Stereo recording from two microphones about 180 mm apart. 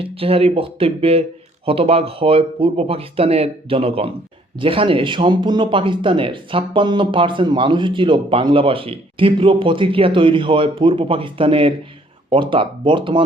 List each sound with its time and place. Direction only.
0.0 s speech: 30° right (ahead or behind)